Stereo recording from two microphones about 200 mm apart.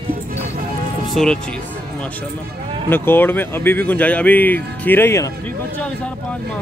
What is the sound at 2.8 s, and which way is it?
Speech, 10° left (ahead or behind).